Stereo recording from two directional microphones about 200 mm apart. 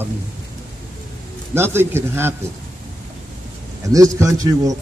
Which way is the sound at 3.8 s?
15° right (ahead or behind).